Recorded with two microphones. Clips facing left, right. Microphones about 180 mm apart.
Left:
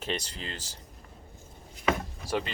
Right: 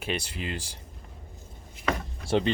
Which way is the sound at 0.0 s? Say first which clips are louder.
Right 2 dB; 10° right (ahead or behind).